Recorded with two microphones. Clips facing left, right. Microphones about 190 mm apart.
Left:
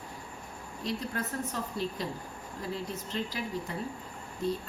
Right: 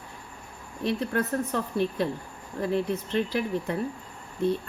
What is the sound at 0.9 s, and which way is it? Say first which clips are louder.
Speech: right 8 dB; 60° right (ahead or behind).